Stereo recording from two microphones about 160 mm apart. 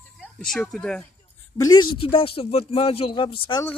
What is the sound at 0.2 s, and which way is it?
Speech, 5° left (ahead or behind).